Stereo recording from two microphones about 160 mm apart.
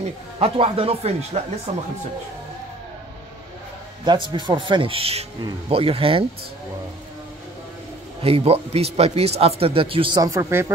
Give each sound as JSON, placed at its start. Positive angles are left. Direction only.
{"t": 0.4, "sound": "speech", "side_deg": -35}
{"t": 4.0, "sound": "speech", "side_deg": -30}
{"t": 8.2, "sound": "speech", "side_deg": -35}